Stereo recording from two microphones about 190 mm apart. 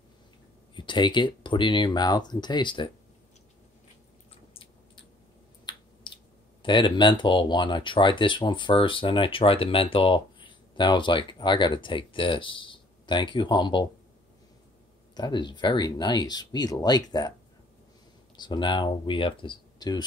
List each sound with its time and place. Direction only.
0.7 s speech: 25° left (ahead or behind)
6.0 s clicking: 25° left (ahead or behind)
6.6 s speech: 25° left (ahead or behind)
15.1 s speech: 20° left (ahead or behind)
18.3 s speech: 25° left (ahead or behind)